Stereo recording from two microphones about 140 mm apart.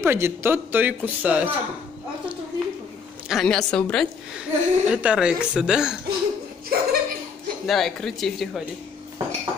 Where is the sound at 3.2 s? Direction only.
Centre (ahead or behind).